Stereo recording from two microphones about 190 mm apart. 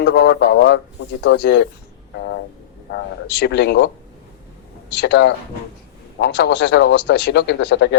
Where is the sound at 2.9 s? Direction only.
60° left (ahead or behind).